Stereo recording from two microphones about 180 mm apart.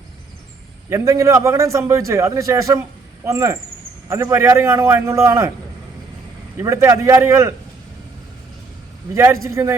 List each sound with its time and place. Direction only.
0.9 s a man's voice: 15° right (ahead or behind)
6.6 s a man's voice: 15° right (ahead or behind)
9.1 s a man's voice: 15° right (ahead or behind)